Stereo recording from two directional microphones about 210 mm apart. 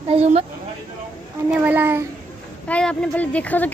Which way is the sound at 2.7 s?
5° left (ahead or behind).